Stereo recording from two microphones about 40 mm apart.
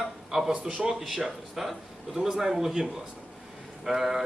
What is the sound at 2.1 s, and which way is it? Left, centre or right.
Speech, centre.